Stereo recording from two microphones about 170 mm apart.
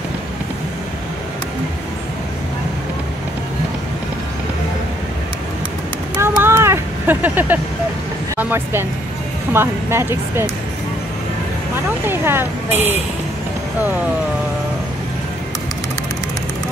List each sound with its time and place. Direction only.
6.1 s vehicle: 15° right (ahead or behind)
8.4 s speech: 10° right (ahead or behind)
12.1 s speech: 15° right (ahead or behind)